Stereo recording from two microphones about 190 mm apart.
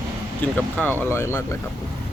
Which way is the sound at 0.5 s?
5° left (ahead or behind).